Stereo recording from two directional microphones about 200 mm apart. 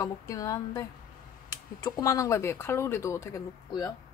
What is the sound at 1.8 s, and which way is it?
Speech, 15° left (ahead or behind).